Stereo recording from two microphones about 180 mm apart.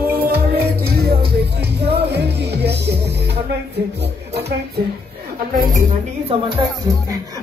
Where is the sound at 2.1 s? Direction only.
65° right (ahead or behind).